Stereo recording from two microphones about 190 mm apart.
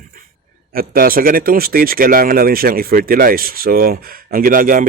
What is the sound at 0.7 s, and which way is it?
Speech, 50° right (ahead or behind).